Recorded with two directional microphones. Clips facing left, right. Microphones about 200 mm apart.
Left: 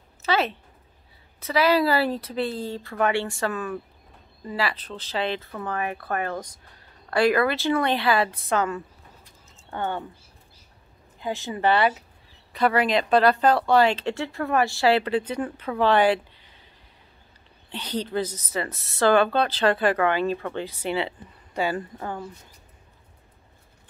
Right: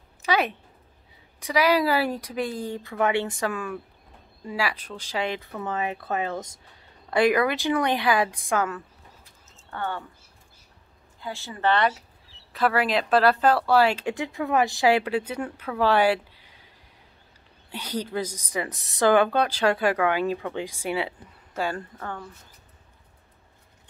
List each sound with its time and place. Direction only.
0.2 s a woman's voice: 15° right (ahead or behind)
5.7 s speech: 20° right (ahead or behind)
9.7 s speech: 15° left (ahead or behind)
11.1 s a woman's voice: 20° left (ahead or behind)
12.5 s speech: centre (ahead or behind)
17.6 s speech: 10° right (ahead or behind)
21.5 s a woman's voice: 5° left (ahead or behind)